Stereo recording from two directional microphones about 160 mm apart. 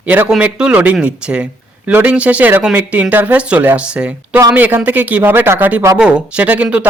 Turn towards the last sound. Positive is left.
turn(degrees=-10)  # may be behind; listen again after turning